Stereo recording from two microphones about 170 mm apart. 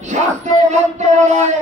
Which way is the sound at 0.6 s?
45° right (ahead or behind).